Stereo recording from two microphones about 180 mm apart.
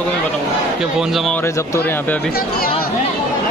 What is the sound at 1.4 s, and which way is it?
Speech, 15° left (ahead or behind).